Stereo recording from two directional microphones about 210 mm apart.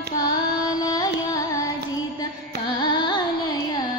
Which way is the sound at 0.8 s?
15° left (ahead or behind).